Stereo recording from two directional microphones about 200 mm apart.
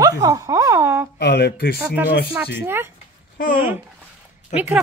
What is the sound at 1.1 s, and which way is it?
Speech, 55° left (ahead or behind).